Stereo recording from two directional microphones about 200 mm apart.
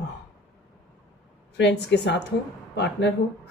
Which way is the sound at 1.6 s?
60° left (ahead or behind).